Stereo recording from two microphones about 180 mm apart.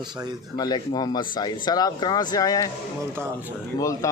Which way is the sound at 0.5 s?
20° left (ahead or behind).